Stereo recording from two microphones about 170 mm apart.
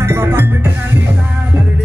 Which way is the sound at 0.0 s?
15° right (ahead or behind).